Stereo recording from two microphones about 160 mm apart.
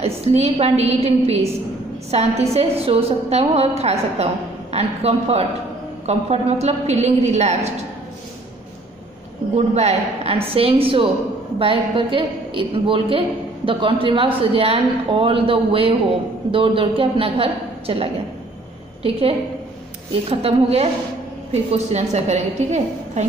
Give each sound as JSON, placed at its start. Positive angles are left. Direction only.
{"t": 0.0, "sound": "a woman's voice", "side_deg": -40}
{"t": 9.8, "sound": "speech", "side_deg": -40}
{"t": 20.2, "sound": "a woman's voice", "side_deg": -40}